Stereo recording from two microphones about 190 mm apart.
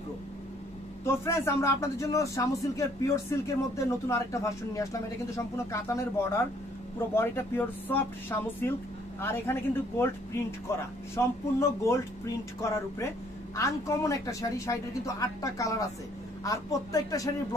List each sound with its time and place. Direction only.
1.0 s a man's voice: 15° left (ahead or behind)